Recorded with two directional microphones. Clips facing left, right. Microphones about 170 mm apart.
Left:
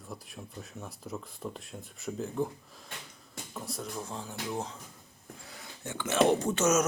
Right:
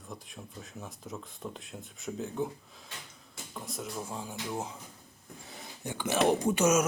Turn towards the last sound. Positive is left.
turn(degrees=-10)  # may be behind; listen again after turning